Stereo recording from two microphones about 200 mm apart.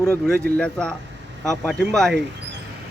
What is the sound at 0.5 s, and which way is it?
Speech, 5° left (ahead or behind).